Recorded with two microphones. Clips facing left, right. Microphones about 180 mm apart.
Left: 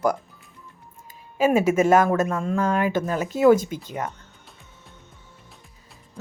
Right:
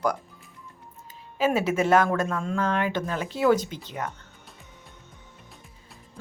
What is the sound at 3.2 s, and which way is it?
Speech, 45° left (ahead or behind).